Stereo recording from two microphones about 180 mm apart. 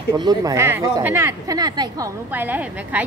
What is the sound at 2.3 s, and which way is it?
Speech, 10° right (ahead or behind).